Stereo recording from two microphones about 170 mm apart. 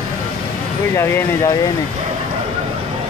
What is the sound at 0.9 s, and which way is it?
Speech, 15° left (ahead or behind).